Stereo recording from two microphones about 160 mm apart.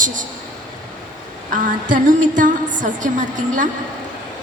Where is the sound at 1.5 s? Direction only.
55° right (ahead or behind).